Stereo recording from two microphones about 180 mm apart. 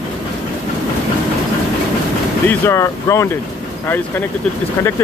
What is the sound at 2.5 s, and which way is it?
Speech, 15° left (ahead or behind).